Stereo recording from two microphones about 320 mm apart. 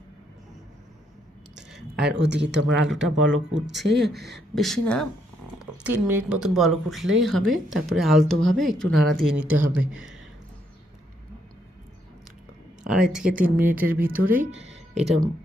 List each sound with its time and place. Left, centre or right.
2.2 s speech: right
2.9 s speech: centre
3.2 s speech: right
4.0 s speech: centre
12.8 s speech: centre